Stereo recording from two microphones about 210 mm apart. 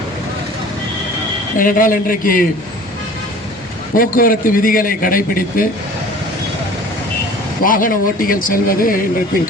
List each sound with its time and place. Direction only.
1.5 s speech: 40° left (ahead or behind)
3.9 s a man's voice: 40° left (ahead or behind)
7.6 s speech: 40° left (ahead or behind)